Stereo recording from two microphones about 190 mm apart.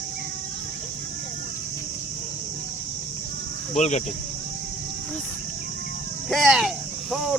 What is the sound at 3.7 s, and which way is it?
Speech, 40° left (ahead or behind).